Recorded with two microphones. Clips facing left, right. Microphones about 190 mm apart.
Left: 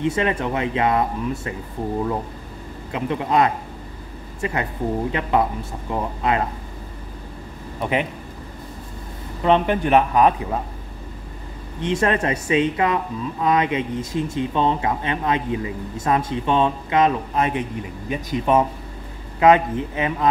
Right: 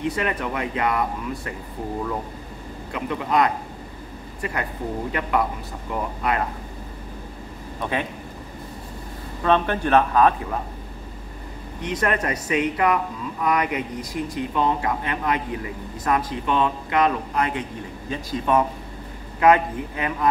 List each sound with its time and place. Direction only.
0.0 s speech: 25° left (ahead or behind)
2.9 s speech: 25° left (ahead or behind)
5.1 s speech: 25° left (ahead or behind)
7.8 s speech: 15° left (ahead or behind)
9.4 s speech: 15° left (ahead or behind)
11.8 s speech: 25° left (ahead or behind)